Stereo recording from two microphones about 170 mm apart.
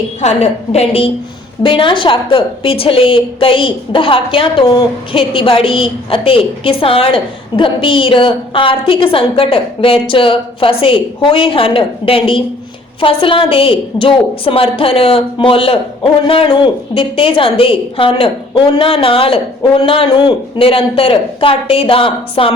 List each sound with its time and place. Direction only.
0.2 s a woman's voice: 40° left (ahead or behind)